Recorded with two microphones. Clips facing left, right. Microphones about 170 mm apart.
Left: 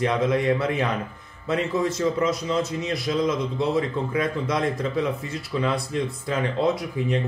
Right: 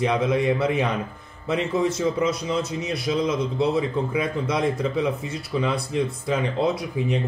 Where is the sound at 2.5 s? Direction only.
15° right (ahead or behind).